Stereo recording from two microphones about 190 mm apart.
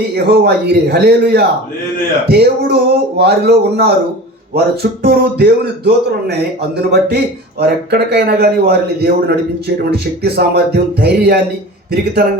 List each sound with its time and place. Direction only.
0.3 s a man's voice: 55° right (ahead or behind)